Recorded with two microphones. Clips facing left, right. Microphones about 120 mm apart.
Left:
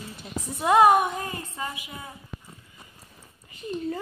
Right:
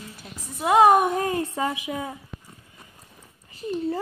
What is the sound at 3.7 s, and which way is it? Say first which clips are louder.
Speech: right 4 dB; 35° right (ahead or behind).